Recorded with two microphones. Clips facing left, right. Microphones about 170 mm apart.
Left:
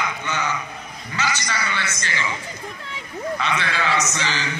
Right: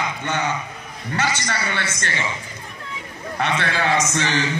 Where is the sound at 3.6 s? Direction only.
55° right (ahead or behind).